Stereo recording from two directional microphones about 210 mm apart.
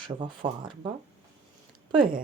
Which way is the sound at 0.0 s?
20° right (ahead or behind).